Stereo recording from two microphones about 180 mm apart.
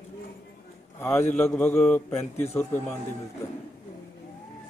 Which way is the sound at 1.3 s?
10° left (ahead or behind).